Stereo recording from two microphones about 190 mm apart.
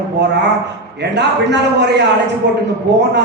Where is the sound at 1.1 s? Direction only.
65° right (ahead or behind).